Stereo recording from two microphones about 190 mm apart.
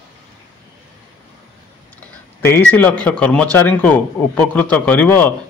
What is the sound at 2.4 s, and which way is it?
A man's voice, 10° left (ahead or behind).